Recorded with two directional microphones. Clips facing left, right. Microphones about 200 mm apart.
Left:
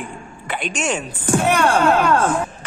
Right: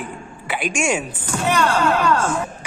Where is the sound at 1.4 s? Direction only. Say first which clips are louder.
Left 2 dB; 55° left (ahead or behind).